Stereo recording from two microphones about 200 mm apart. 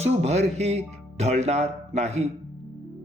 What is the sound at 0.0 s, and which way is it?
Speech, 35° right (ahead or behind).